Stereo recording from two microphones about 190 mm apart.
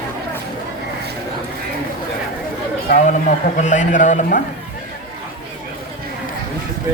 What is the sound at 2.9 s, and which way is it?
A man's voice, 40° left (ahead or behind).